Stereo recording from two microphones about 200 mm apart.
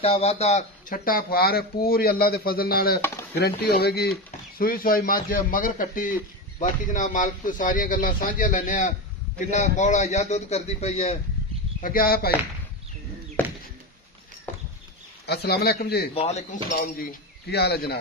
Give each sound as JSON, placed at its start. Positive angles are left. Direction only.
{"t": 0.0, "sound": "speech", "side_deg": 30}
{"t": 11.8, "sound": "speech", "side_deg": 45}
{"t": 15.2, "sound": "speech", "side_deg": 55}
{"t": 16.2, "sound": "speech", "side_deg": 35}
{"t": 16.7, "sound": "speech", "side_deg": 45}